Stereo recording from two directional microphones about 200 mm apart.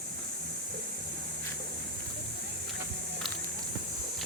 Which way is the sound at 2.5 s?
55° right (ahead or behind).